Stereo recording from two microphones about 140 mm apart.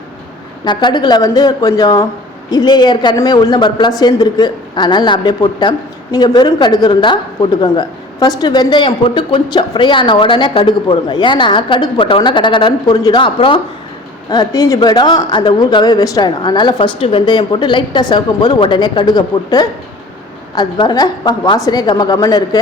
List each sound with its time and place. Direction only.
0.6 s a woman's voice: 35° left (ahead or behind)